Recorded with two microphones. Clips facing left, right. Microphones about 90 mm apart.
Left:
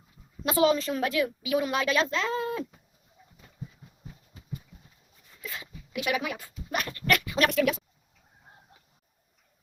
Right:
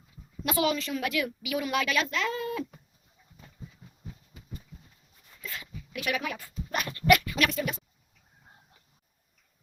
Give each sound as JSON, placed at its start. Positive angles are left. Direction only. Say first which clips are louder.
{"t": 0.4, "sound": "a woman's voice", "louder": "left 4 dB", "side_deg": 30}
{"t": 5.4, "sound": "a sound", "louder": "left 1 dB", "side_deg": 15}
{"t": 6.7, "sound": "dog", "louder": "right 4 dB", "side_deg": 0}
{"t": 7.5, "sound": "speech", "louder": "left 7 dB", "side_deg": 90}